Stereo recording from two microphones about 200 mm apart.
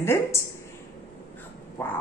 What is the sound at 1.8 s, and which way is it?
Speech, 10° left (ahead or behind).